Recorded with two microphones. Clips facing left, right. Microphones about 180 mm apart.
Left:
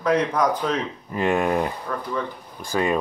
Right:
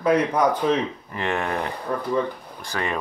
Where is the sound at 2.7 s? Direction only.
15° left (ahead or behind).